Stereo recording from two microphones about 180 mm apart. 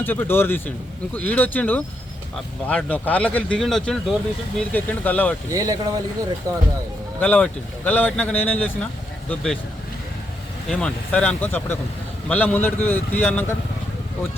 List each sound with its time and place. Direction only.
0.0 s speech: 10° left (ahead or behind)
5.5 s speech: 15° right (ahead or behind)
7.2 s speech: 10° left (ahead or behind)
10.7 s speech: 5° left (ahead or behind)